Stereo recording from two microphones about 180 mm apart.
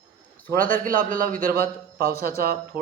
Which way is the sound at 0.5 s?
50° right (ahead or behind).